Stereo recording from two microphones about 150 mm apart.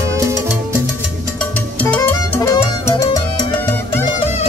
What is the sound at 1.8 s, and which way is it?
Music, 10° left (ahead or behind).